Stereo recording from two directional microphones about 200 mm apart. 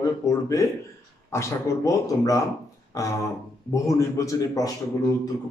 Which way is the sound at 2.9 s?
15° left (ahead or behind).